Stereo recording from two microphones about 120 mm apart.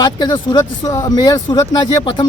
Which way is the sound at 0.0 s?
35° left (ahead or behind).